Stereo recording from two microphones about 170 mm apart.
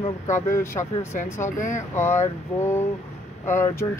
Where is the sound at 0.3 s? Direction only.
15° left (ahead or behind).